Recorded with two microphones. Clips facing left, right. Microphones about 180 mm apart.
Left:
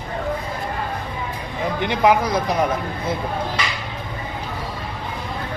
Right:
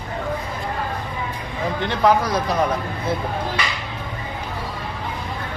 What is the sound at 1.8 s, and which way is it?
Speech, 15° left (ahead or behind).